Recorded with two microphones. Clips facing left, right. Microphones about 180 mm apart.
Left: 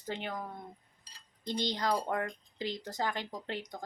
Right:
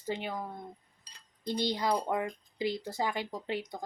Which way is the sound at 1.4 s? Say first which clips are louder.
Right 2 dB; 10° right (ahead or behind).